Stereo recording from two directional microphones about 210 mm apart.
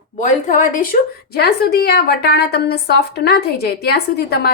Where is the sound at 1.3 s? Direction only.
50° left (ahead or behind).